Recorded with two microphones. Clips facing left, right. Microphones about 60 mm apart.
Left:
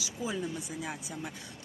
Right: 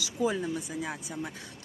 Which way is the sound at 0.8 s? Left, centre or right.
Right.